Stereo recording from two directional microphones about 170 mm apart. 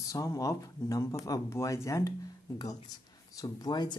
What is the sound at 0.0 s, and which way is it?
Speech, 20° left (ahead or behind).